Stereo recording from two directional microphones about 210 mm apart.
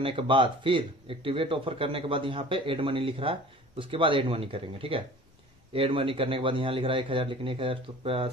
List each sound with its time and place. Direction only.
0.0 s speech: 25° right (ahead or behind)